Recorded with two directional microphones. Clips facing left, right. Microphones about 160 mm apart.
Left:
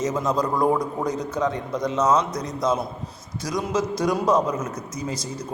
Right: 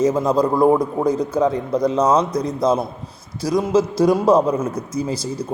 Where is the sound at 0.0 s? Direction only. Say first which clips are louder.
Right 7 dB; 30° right (ahead or behind).